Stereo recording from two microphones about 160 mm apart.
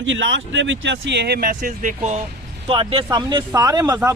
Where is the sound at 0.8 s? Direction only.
90° right; by 1.9 s 60° right (ahead or behind).